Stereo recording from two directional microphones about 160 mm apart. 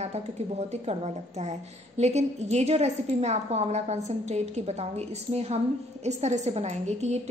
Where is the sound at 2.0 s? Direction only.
45° right (ahead or behind).